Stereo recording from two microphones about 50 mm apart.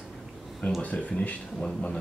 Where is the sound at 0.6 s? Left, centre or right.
Left.